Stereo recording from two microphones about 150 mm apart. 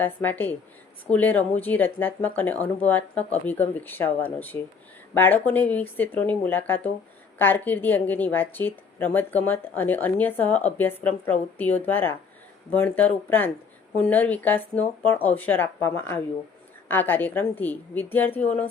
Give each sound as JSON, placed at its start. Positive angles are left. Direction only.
{"t": 0.0, "sound": "a woman's voice", "side_deg": 10}